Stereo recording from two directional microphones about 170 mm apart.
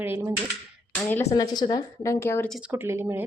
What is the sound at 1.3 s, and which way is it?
A woman's voice, 25° left (ahead or behind).